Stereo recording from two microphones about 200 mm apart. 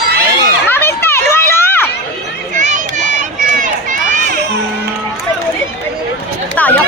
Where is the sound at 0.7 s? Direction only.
10° left (ahead or behind).